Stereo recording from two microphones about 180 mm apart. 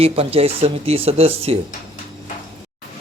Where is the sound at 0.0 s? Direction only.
35° right (ahead or behind).